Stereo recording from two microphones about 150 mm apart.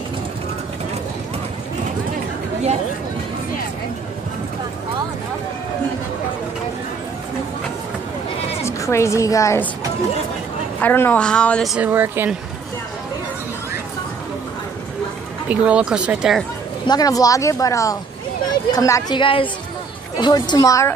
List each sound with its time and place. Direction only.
8.6 s a woman's voice: 20° left (ahead or behind)
10.8 s a woman's voice: 15° left (ahead or behind)
11.8 s speech: 15° right (ahead or behind)
15.4 s speech: 10° right (ahead or behind)
16.8 s a woman's voice: 25° left (ahead or behind)
19.1 s a woman's voice: 35° left (ahead or behind)